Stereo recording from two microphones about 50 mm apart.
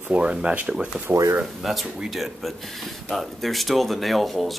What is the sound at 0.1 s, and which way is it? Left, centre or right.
Speech, right.